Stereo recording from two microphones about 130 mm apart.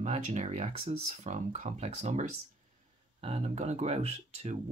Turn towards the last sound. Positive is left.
turn(degrees=-55)  # may be behind; listen again after turning